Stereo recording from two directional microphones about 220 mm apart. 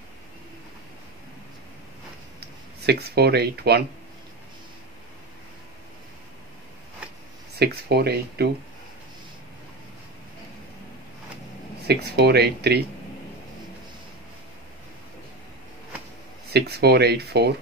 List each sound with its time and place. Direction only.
2.9 s speech: 45° right (ahead or behind)
7.5 s speech: 45° right (ahead or behind)
11.9 s speech: 45° right (ahead or behind)
16.5 s speech: 50° right (ahead or behind)